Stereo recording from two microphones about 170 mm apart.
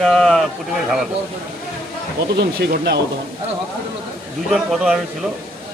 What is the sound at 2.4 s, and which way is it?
Speech, 75° right (ahead or behind).